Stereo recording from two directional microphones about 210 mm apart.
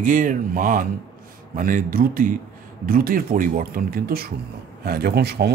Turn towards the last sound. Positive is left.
turn(degrees=-50)  # may be behind; listen again after turning